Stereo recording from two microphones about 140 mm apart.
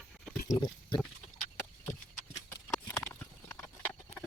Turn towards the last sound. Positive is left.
turn(degrees=15)  # may be behind; listen again after turning